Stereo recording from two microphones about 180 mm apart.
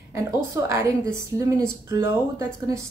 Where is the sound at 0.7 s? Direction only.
15° right (ahead or behind).